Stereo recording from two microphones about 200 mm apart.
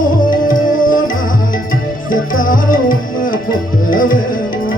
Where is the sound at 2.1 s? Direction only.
45° left (ahead or behind).